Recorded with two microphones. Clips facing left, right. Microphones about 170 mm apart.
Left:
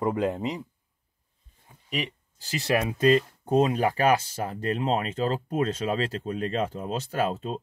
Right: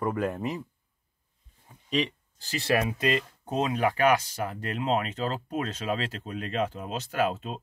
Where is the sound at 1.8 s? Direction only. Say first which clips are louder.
Right 4 dB; 10° left (ahead or behind).